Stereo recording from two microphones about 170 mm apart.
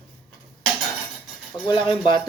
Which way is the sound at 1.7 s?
25° left (ahead or behind).